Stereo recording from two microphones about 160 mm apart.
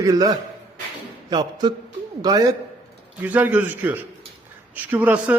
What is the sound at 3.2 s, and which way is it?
Speech, 10° right (ahead or behind).